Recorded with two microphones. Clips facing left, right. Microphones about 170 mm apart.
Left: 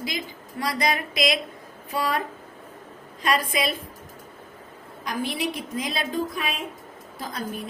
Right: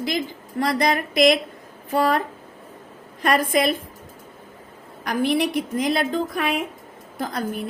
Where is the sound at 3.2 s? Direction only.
55° right (ahead or behind).